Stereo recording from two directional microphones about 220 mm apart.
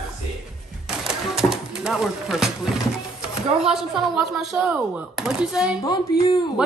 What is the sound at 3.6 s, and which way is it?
Speech, centre (ahead or behind).